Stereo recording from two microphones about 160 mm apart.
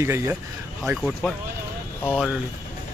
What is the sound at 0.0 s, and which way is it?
Speech, 15° right (ahead or behind).